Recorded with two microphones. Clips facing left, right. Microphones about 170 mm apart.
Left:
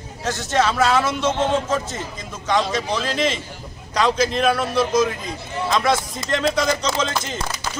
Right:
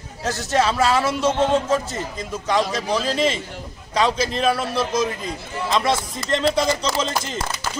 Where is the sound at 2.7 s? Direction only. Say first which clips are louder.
Right 1 dB; 35° right (ahead or behind).